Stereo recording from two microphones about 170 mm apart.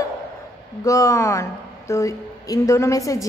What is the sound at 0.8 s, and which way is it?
Speech, 20° left (ahead or behind).